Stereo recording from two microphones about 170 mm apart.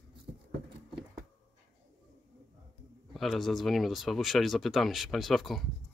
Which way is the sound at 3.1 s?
Centre (ahead or behind).